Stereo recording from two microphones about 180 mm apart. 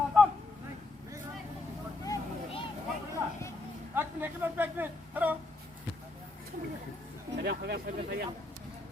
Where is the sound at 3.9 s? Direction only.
10° right (ahead or behind).